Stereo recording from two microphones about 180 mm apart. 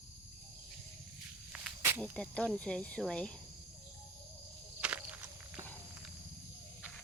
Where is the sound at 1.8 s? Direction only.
10° right (ahead or behind).